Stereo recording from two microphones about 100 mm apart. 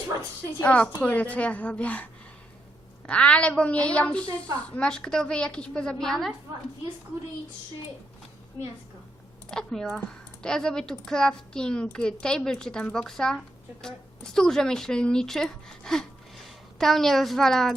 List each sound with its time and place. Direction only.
0.2 s speech: 10° left (ahead or behind)
3.1 s speech: 10° left (ahead or behind)
9.5 s speech: 5° left (ahead or behind)